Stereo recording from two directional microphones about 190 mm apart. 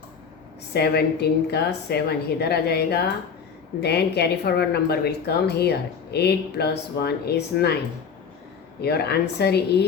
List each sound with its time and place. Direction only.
0.7 s a woman's voice: 60° left (ahead or behind)
8.8 s a woman's voice: 55° left (ahead or behind)